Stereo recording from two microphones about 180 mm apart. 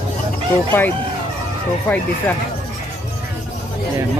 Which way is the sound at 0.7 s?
10° left (ahead or behind).